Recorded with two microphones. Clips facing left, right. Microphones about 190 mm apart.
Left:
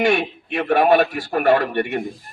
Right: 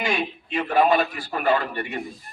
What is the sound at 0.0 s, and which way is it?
A man's voice, 75° left (ahead or behind).